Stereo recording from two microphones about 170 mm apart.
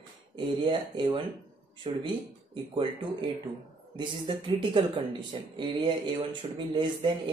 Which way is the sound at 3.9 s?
30° right (ahead or behind).